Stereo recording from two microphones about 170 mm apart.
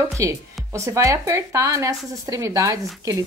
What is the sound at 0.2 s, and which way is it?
A woman's voice, 20° right (ahead or behind).